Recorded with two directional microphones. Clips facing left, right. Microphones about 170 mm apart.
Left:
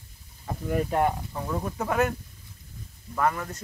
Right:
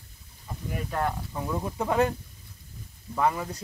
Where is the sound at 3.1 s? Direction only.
10° right (ahead or behind).